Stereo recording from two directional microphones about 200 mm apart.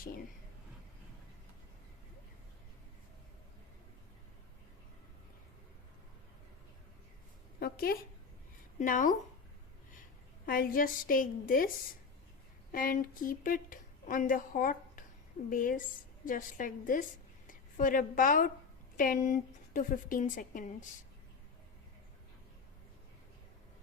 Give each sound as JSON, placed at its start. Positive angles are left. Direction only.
{"t": 7.6, "sound": "a sound", "side_deg": 50}
{"t": 8.8, "sound": "a woman's voice", "side_deg": 40}
{"t": 10.4, "sound": "a woman's voice", "side_deg": 45}
{"t": 12.7, "sound": "a woman's voice", "side_deg": 45}